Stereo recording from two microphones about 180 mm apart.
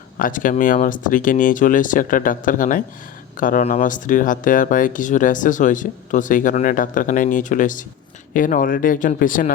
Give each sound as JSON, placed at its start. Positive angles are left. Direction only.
{"t": 0.2, "sound": "speech", "side_deg": 50}